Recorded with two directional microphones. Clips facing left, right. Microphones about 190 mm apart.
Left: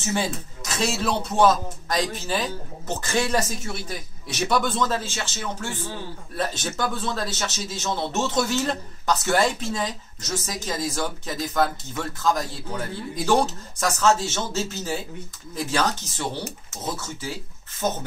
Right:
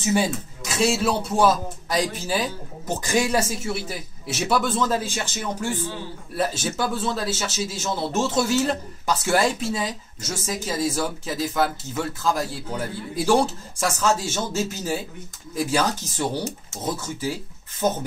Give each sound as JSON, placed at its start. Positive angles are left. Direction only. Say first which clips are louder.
{"t": 0.0, "sound": "a man's voice", "louder": "right 4 dB", "side_deg": -10}